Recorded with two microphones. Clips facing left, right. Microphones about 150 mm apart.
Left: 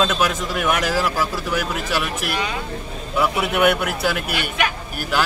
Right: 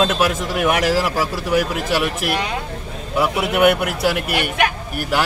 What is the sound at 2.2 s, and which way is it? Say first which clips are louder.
Speech: right 3 dB; 55° right (ahead or behind).